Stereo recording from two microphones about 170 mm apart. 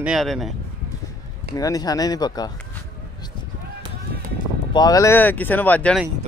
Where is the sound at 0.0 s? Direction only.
Centre (ahead or behind).